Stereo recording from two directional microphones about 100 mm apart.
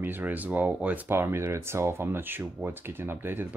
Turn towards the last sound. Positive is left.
turn(degrees=-20)  # may be behind; listen again after turning